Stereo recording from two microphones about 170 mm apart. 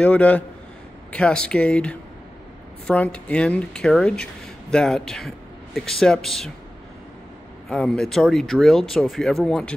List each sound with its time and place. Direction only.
0.0 s speech: 10° left (ahead or behind)
7.7 s speech: 5° left (ahead or behind)